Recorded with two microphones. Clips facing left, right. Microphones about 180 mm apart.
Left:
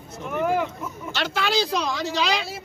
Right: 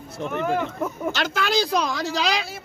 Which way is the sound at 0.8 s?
45° right (ahead or behind).